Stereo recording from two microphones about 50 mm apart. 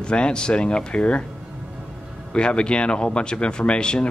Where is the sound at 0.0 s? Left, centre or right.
Centre.